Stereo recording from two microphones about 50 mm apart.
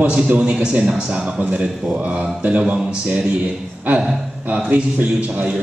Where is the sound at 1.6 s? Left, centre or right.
Centre.